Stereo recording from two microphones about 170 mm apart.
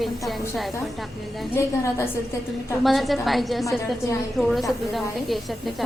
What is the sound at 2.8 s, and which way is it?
A woman's voice, centre (ahead or behind).